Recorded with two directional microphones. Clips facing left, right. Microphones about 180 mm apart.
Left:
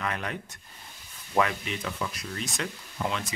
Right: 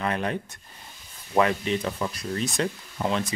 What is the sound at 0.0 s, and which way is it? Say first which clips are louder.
Speech: right 6 dB; 30° right (ahead or behind).